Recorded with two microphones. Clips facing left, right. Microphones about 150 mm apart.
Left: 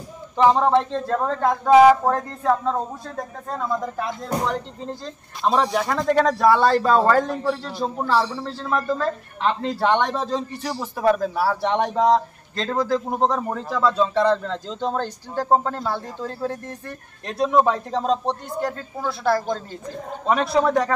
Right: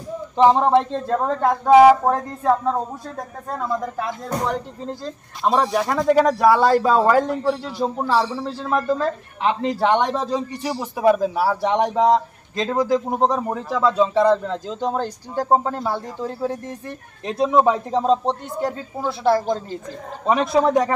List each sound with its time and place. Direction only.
0.4 s a man's voice: 20° right (ahead or behind)
18.2 s a man's voice: 20° right (ahead or behind)